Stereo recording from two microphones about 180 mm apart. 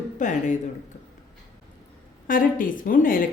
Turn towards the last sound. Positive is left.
turn(degrees=50)  # may be behind; listen again after turning